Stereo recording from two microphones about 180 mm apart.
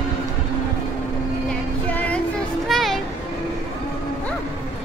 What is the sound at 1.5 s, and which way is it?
Music, 5° left (ahead or behind).